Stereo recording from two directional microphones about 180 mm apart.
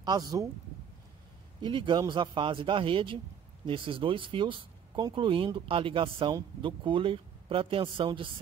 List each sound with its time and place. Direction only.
0.0 s speech: 20° right (ahead or behind)
1.6 s speech: 25° right (ahead or behind)